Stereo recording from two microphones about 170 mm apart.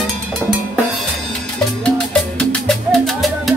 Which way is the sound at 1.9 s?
5° left (ahead or behind).